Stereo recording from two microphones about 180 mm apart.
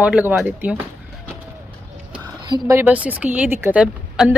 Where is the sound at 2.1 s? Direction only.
25° right (ahead or behind).